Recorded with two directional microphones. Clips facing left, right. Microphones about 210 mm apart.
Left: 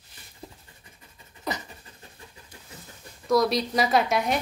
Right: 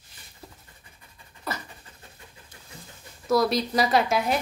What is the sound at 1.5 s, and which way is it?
Pant, 15° left (ahead or behind).